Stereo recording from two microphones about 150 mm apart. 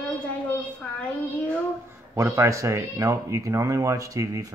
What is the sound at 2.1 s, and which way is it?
Speech, 20° right (ahead or behind).